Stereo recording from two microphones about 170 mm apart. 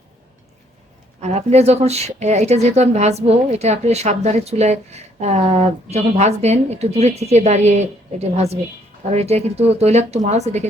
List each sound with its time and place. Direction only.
1.2 s speech: 40° right (ahead or behind)